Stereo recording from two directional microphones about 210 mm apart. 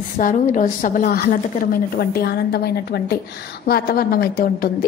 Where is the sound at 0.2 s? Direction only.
40° left (ahead or behind).